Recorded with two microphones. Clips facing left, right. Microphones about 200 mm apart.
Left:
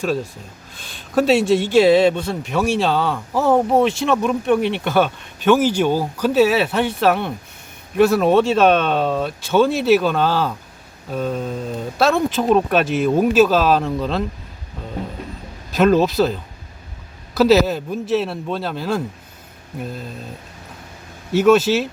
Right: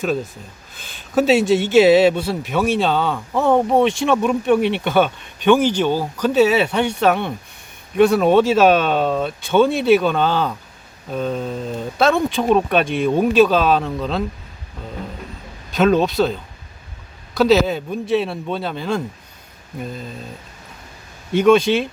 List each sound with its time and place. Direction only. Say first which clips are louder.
0.0 s speech: even; centre (ahead or behind)
15.7 s speech: left 1 dB; centre (ahead or behind)
21.3 s speech: even; 5° left (ahead or behind)